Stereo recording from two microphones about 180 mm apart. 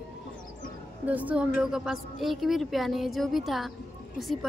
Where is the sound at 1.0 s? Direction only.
10° right (ahead or behind).